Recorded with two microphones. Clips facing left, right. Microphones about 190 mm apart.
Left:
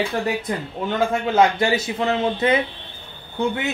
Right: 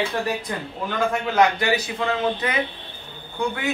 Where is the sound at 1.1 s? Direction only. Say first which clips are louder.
Left 1 dB; 25° left (ahead or behind).